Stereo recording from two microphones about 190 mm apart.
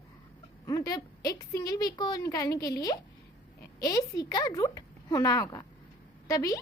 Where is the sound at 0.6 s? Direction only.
20° left (ahead or behind).